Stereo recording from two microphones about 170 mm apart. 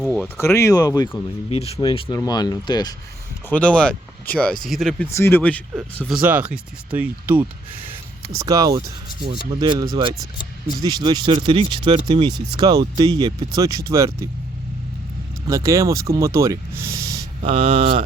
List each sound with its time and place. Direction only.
0.0 s a sound: centre (ahead or behind)
0.3 s speech: 15° left (ahead or behind)
1.5 s speech: 35° left (ahead or behind)
3.5 s speech: 5° left (ahead or behind)
5.1 s speech: 15° left (ahead or behind)
5.7 s speech: 5° right (ahead or behind)
15.4 s speech: 20° right (ahead or behind)
17.4 s speech: 35° right (ahead or behind)